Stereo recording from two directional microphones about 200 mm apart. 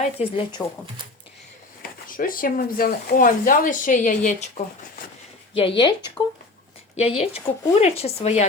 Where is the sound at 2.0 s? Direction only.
45° left (ahead or behind).